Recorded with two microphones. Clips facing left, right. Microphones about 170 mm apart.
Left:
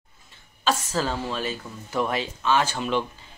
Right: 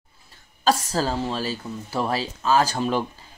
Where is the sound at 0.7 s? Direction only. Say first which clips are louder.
Right 3 dB; 35° right (ahead or behind).